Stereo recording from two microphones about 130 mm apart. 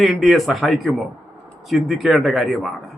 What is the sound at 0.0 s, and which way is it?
A man's voice, centre (ahead or behind).